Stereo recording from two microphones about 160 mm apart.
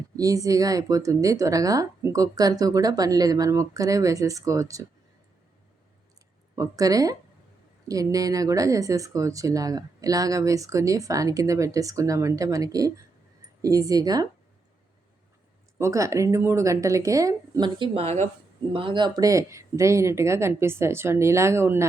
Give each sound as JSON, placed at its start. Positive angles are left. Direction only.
{"t": 0.2, "sound": "speech", "side_deg": -20}
{"t": 6.6, "sound": "speech", "side_deg": -20}
{"t": 15.8, "sound": "speech", "side_deg": -20}